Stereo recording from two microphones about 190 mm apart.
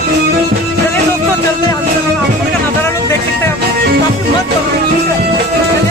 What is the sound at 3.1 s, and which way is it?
Music, 10° left (ahead or behind).